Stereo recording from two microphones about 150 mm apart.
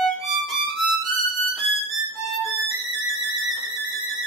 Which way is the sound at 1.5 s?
Centre (ahead or behind).